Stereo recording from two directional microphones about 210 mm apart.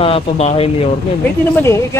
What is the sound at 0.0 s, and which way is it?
Speech, 30° left (ahead or behind).